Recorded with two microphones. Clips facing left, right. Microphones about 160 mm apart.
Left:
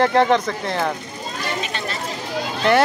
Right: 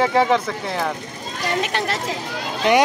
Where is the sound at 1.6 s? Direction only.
70° right (ahead or behind).